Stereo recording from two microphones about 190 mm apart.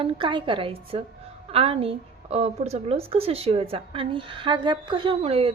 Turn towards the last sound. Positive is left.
turn(degrees=-30)  # may be behind; listen again after turning